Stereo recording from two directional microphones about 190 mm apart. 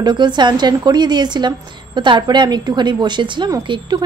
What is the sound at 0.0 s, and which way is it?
A woman's voice, 25° right (ahead or behind).